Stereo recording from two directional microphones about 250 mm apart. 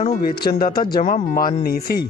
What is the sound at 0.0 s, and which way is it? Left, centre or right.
Speech, left.